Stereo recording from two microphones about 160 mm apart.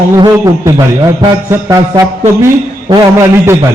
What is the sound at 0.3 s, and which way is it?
A man's voice, 20° right (ahead or behind).